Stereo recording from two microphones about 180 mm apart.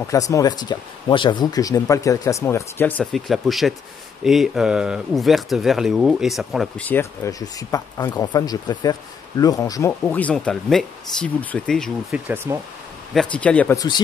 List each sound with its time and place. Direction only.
0.0 s speech: 15° left (ahead or behind)
3.0 s speech: centre (ahead or behind)
12.5 s speech: 15° right (ahead or behind)
13.1 s speech: 5° left (ahead or behind)
13.7 s speech: 25° left (ahead or behind)